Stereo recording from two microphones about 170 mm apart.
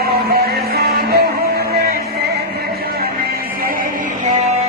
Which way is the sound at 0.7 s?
70° right (ahead or behind).